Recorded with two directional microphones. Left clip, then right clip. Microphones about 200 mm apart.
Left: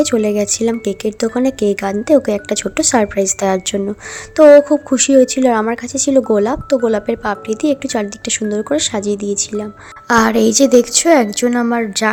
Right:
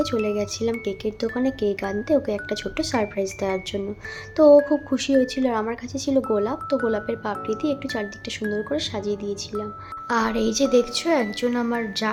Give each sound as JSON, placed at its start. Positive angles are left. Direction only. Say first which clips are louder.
{"t": 0.0, "sound": "a woman's voice", "louder": "left 9 dB", "side_deg": 35}